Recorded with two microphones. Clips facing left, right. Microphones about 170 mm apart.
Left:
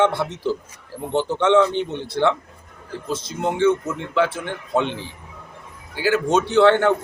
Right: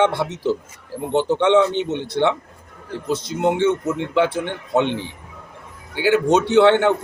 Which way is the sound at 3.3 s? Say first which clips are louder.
Even; 20° right (ahead or behind).